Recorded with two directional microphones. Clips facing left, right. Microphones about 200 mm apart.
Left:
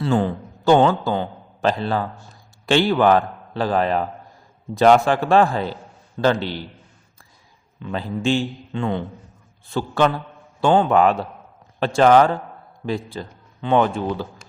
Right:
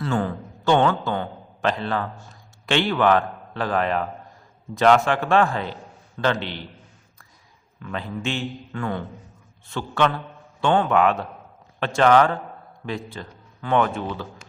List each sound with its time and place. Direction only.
0.0 s a man's voice: 30° left (ahead or behind)
7.8 s a man's voice: 30° left (ahead or behind)
9.6 s a man's voice: 35° left (ahead or behind)